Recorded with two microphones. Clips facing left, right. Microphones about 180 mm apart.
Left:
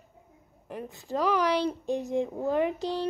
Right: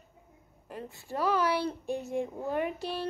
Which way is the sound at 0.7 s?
20° left (ahead or behind).